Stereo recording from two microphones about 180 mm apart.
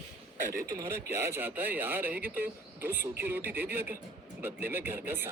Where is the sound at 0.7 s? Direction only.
15° right (ahead or behind).